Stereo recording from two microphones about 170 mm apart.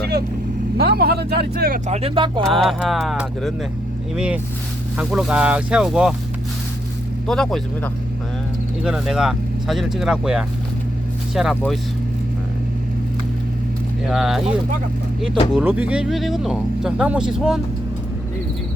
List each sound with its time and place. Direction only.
0.0 s vehicle: 70° right (ahead or behind)
0.8 s speech: 65° right (ahead or behind)
1.9 s speech: 35° right (ahead or behind)
2.5 s speech: centre (ahead or behind)
7.3 s speech: 5° left (ahead or behind)
14.1 s speech: centre (ahead or behind)